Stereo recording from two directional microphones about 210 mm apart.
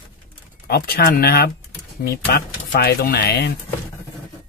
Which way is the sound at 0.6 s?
50° left (ahead or behind).